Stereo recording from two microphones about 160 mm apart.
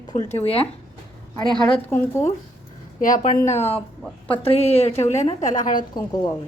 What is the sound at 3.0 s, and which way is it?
A woman's voice, 55° left (ahead or behind).